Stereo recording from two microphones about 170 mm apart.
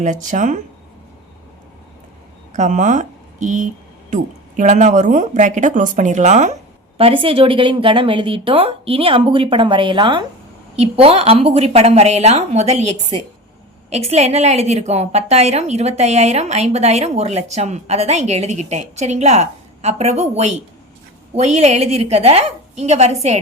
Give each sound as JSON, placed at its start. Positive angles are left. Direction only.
{"t": 0.0, "sound": "speech", "side_deg": -45}
{"t": 2.5, "sound": "speech", "side_deg": -45}
{"t": 6.9, "sound": "a woman's voice", "side_deg": -30}